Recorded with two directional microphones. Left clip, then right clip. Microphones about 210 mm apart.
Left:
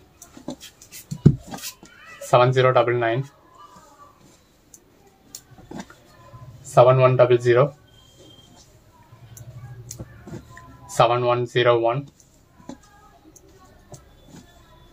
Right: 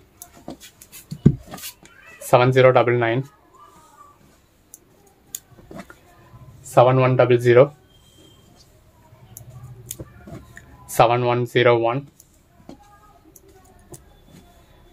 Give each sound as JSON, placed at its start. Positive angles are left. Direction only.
{"t": 2.3, "sound": "speech", "side_deg": -50}
{"t": 6.7, "sound": "speech", "side_deg": -45}
{"t": 10.9, "sound": "speech", "side_deg": -45}